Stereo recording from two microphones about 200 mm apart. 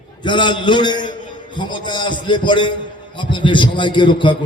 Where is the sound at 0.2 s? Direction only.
25° left (ahead or behind).